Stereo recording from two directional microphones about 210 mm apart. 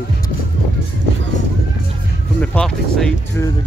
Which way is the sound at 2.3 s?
5° left (ahead or behind).